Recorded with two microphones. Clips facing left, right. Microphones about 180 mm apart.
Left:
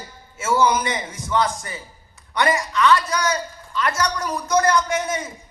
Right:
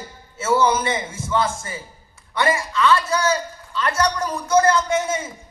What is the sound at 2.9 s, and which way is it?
A man's voice, 30° right (ahead or behind).